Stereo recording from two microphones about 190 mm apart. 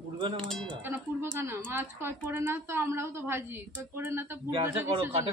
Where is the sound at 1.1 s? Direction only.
15° right (ahead or behind).